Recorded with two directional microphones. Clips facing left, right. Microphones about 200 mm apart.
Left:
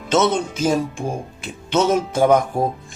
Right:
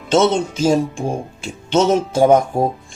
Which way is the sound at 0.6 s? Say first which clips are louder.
Right 4 dB; 25° right (ahead or behind).